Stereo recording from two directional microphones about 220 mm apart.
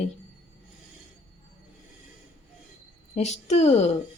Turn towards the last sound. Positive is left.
turn(degrees=30)  # may be behind; listen again after turning